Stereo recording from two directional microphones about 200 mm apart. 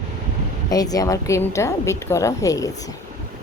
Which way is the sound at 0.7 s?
20° left (ahead or behind).